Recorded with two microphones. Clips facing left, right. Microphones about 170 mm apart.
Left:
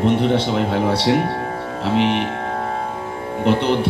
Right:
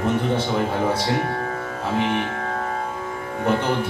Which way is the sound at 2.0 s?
25° left (ahead or behind).